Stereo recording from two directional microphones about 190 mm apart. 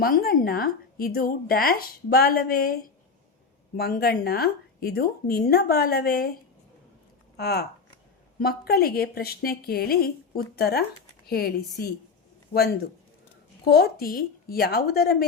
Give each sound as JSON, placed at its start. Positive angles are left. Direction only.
{"t": 0.0, "sound": "speech", "side_deg": 50}
{"t": 7.3, "sound": "speech", "side_deg": 55}
{"t": 13.7, "sound": "speech", "side_deg": 55}